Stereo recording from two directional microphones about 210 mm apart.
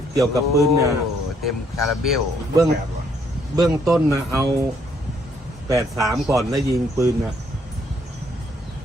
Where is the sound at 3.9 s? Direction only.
15° right (ahead or behind).